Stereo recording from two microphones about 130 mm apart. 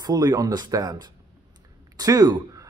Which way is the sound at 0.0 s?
30° right (ahead or behind).